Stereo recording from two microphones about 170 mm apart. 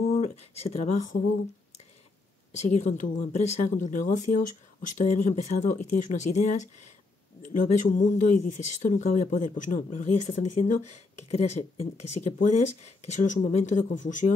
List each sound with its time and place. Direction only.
0.1 s speech: 40° left (ahead or behind)
2.5 s speech: 40° left (ahead or behind)